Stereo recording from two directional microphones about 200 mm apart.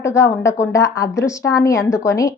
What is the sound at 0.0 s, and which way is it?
A woman's voice, 15° left (ahead or behind).